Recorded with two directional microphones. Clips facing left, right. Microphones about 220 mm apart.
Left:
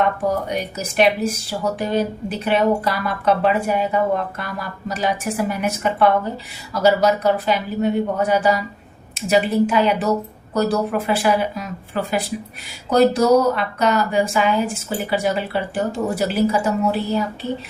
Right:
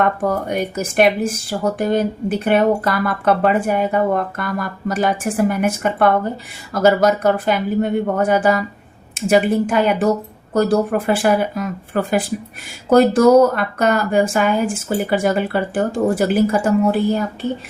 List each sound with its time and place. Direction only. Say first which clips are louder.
0.4 s speech: right 4 dB; 50° right (ahead or behind)